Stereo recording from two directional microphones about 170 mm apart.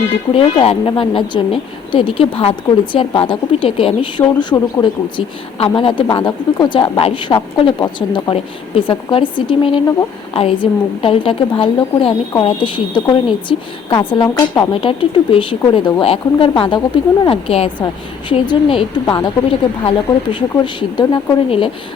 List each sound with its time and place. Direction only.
0.3 s a woman's voice: 35° left (ahead or behind)